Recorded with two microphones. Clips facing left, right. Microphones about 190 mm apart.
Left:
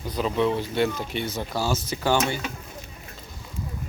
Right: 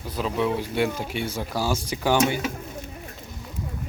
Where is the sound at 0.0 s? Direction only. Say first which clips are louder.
Left 2 dB; centre (ahead or behind).